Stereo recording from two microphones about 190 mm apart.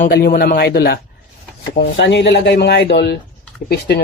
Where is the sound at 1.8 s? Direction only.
70° left (ahead or behind).